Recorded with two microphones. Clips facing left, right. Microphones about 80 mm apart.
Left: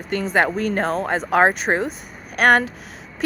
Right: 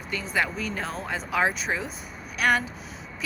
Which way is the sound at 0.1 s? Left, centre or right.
Left.